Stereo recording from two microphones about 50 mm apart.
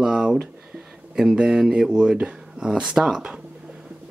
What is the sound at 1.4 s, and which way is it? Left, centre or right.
Speech, centre.